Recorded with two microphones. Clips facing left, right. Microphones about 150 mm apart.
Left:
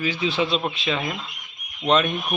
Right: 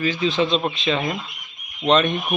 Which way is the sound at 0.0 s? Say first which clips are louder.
Right 3 dB; 10° left (ahead or behind).